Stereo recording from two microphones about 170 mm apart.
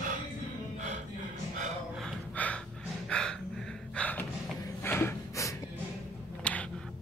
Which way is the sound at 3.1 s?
5° left (ahead or behind).